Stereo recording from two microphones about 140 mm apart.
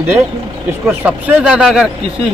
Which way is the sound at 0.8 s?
10° right (ahead or behind).